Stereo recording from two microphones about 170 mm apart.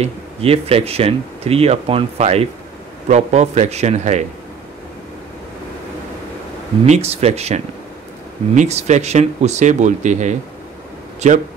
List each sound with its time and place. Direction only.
0.0 s speech: 35° right (ahead or behind)
6.9 s speech: 40° right (ahead or behind)